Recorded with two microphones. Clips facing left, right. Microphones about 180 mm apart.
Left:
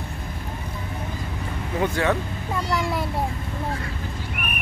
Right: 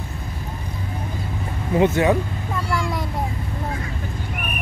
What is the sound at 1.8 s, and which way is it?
Speech, 20° right (ahead or behind).